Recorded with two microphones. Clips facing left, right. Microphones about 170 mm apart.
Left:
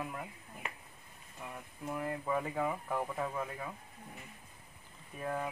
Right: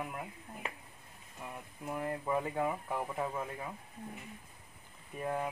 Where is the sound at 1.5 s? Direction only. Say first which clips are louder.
Even; 5° right (ahead or behind).